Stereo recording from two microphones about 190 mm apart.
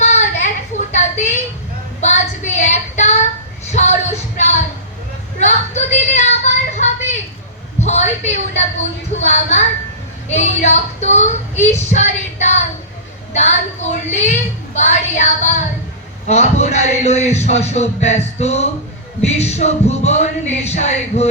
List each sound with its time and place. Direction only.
0.0 s child singing: 40° left (ahead or behind)
3.7 s music: 35° left (ahead or behind)
5.4 s a sound: 35° left (ahead or behind)
10.2 s a man's voice: 35° left (ahead or behind)